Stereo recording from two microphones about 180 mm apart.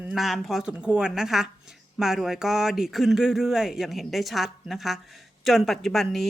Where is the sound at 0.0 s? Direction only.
Centre (ahead or behind).